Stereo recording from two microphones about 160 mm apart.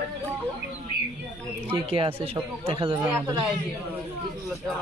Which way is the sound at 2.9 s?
15° right (ahead or behind).